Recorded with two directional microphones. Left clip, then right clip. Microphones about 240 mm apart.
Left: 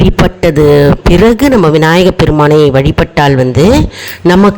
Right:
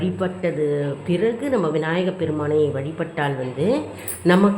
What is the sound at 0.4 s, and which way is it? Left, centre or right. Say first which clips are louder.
Speech: left 17 dB; left.